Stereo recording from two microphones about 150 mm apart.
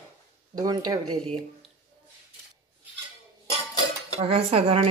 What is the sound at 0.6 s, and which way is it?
Speech, 25° right (ahead or behind).